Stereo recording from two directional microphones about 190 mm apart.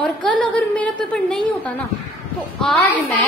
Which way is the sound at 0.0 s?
5° left (ahead or behind).